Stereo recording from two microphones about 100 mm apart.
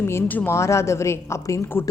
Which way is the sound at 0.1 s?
25° left (ahead or behind).